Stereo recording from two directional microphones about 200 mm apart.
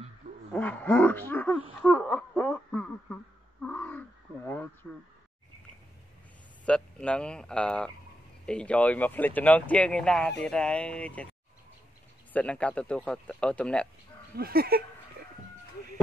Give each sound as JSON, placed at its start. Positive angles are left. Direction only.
{"t": 0.5, "sound": "speech", "side_deg": 10}
{"t": 3.6, "sound": "wild animals", "side_deg": 10}
{"t": 6.6, "sound": "speech", "side_deg": 5}
{"t": 12.3, "sound": "speech", "side_deg": 5}
{"t": 14.3, "sound": "a sound", "side_deg": -50}